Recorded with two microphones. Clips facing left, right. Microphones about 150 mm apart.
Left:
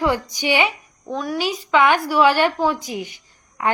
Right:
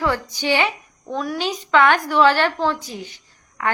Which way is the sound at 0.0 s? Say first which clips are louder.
Left 1 dB; 15° left (ahead or behind).